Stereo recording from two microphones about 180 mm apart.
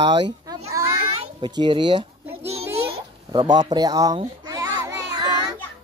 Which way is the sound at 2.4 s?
35° right (ahead or behind).